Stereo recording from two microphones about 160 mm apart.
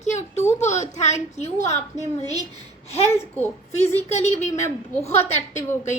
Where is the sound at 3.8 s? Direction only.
40° left (ahead or behind).